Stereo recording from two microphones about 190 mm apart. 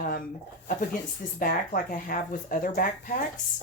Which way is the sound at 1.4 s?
45° left (ahead or behind).